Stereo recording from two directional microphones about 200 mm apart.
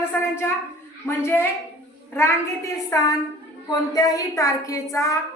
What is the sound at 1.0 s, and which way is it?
Speech, 10° left (ahead or behind).